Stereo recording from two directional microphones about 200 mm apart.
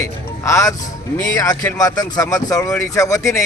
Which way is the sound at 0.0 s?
15° left (ahead or behind).